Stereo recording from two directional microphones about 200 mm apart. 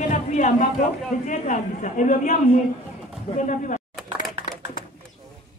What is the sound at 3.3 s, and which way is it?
Speech, 40° left (ahead or behind).